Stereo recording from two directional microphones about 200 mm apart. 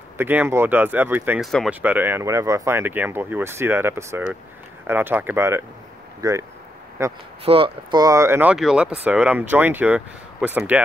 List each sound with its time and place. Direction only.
0.2 s speech: 10° right (ahead or behind)
7.4 s speech: 25° right (ahead or behind); by 10.8 s 5° right (ahead or behind)